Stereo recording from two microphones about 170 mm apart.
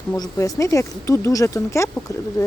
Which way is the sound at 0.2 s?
20° left (ahead or behind).